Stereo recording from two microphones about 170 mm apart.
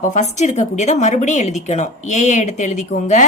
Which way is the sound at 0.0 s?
45° left (ahead or behind).